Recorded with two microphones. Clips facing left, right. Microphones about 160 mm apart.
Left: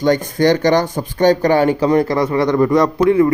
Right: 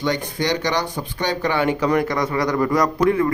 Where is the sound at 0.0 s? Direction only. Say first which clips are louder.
Left 8 dB; 45° left (ahead or behind).